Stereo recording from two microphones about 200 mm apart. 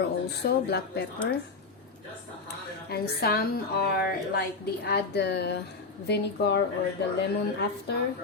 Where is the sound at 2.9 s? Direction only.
50° left (ahead or behind).